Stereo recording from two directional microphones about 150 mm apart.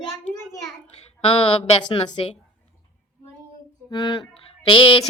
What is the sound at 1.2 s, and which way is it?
Speech, 35° left (ahead or behind).